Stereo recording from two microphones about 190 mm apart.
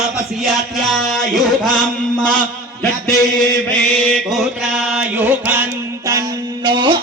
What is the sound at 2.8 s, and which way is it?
Mantra, 5° left (ahead or behind).